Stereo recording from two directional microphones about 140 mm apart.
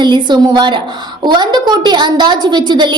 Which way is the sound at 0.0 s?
30° right (ahead or behind).